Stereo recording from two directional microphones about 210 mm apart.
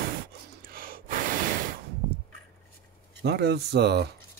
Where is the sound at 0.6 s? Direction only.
45° right (ahead or behind).